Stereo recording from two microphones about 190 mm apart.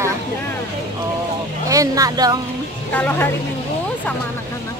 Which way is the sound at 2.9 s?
10° left (ahead or behind).